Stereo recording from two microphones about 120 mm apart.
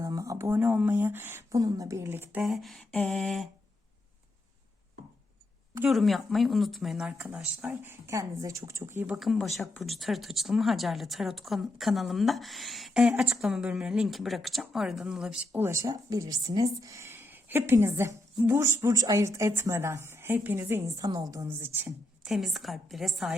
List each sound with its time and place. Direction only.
0.0 s speech: 25° right (ahead or behind)
2.4 s a woman's voice: centre (ahead or behind)
5.9 s speech: centre (ahead or behind); by 9.1 s 20° right (ahead or behind)
9.1 s a woman's voice: centre (ahead or behind)
15.6 s speech: 25° right (ahead or behind)
22.3 s a woman's voice: centre (ahead or behind)